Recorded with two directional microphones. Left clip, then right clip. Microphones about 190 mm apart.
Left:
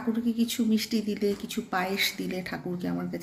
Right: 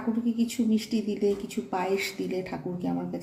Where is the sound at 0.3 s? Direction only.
5° left (ahead or behind).